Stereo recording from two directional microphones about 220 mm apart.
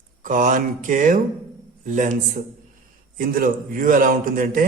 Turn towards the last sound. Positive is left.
turn(degrees=-40)  # may be behind; listen again after turning